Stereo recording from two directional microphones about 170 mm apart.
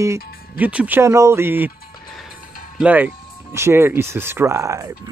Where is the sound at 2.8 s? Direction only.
10° right (ahead or behind).